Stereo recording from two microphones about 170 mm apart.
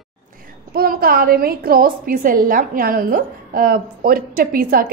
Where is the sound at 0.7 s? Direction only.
60° right (ahead or behind).